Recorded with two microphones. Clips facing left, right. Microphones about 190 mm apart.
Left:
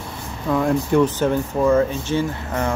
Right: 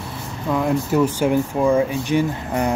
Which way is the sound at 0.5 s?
5° right (ahead or behind).